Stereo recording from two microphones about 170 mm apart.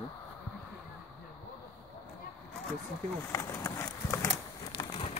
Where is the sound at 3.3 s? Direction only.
20° left (ahead or behind).